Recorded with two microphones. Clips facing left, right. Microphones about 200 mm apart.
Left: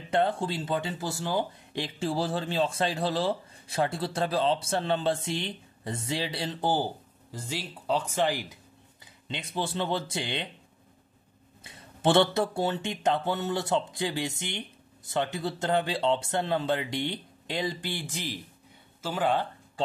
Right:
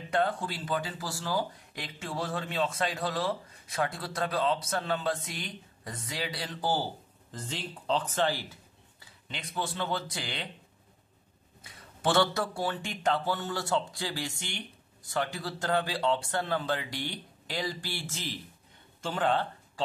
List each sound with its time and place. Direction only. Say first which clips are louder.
0.1 s speech: left 3 dB; 25° left (ahead or behind)
7.2 s speech: left 2 dB; 10° left (ahead or behind)
11.6 s speech: left 5 dB; 25° left (ahead or behind); by 19.4 s 10° left (ahead or behind)